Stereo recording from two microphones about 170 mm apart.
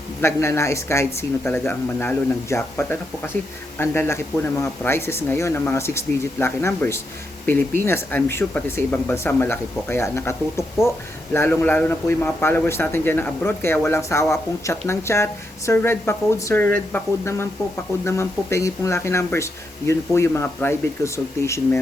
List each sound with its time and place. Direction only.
0.2 s speech: 15° left (ahead or behind)